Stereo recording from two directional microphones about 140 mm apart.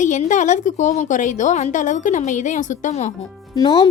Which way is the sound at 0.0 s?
60° left (ahead or behind).